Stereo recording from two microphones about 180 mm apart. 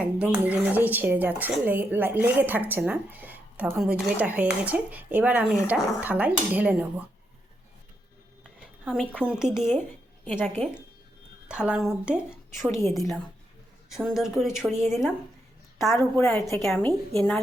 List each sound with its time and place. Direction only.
0.0 s speech: 5° right (ahead or behind)
8.8 s speech: 5° right (ahead or behind)
10.4 s a woman's voice: 10° left (ahead or behind)
11.4 s speech: 5° right (ahead or behind)
16.2 s a woman's voice: 15° left (ahead or behind)
16.6 s a woman's voice: 5° left (ahead or behind)